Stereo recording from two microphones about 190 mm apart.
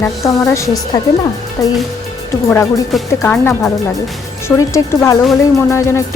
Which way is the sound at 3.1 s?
15° left (ahead or behind).